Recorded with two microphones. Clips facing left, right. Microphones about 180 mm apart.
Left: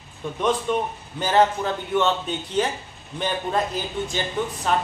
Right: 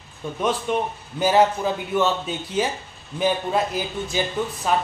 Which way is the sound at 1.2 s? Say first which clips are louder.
Right 2 dB; 10° right (ahead or behind).